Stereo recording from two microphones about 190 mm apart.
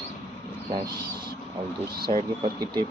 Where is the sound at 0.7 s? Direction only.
20° right (ahead or behind).